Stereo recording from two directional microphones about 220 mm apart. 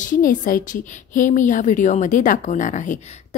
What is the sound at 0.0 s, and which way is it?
A woman's voice, 40° left (ahead or behind).